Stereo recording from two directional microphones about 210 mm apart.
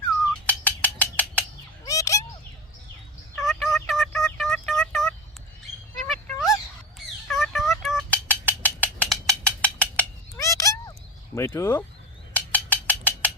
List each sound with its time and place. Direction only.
0.4 s bird: 5° left (ahead or behind)
3.4 s turkey: centre (ahead or behind)
3.8 s a sound: centre (ahead or behind)
7.3 s music: centre (ahead or behind); by 10.9 s 15° left (ahead or behind)
11.3 s speech: 15° left (ahead or behind)
12.3 s a sound: 5° left (ahead or behind)